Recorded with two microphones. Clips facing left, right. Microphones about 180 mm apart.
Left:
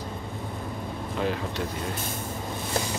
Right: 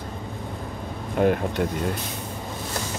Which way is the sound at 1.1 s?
55° right (ahead or behind).